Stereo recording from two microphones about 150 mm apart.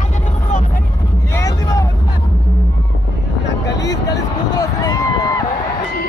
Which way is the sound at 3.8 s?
25° left (ahead or behind).